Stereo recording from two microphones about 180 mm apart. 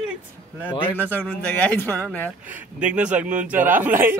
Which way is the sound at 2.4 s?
5° right (ahead or behind).